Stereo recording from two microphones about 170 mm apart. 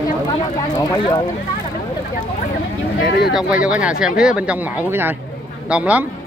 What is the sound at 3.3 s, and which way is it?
Speech, 5° right (ahead or behind).